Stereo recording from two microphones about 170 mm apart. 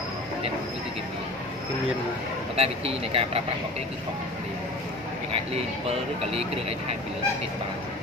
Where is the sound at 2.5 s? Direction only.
35° right (ahead or behind).